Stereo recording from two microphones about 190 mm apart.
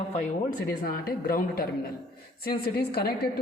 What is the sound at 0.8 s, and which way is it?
Speech, 50° left (ahead or behind).